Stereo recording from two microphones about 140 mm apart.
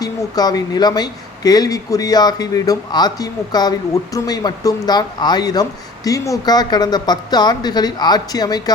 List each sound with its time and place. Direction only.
0.0 s speech: 25° left (ahead or behind)